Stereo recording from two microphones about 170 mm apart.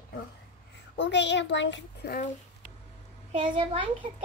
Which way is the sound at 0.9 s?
90° left.